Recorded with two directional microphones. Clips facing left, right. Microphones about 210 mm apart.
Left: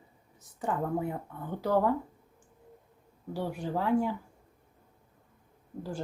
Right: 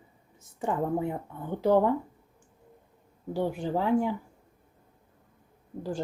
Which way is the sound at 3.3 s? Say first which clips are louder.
Right 4 dB; 25° right (ahead or behind).